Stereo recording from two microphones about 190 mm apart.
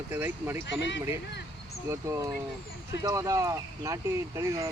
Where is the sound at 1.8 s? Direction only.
15° right (ahead or behind).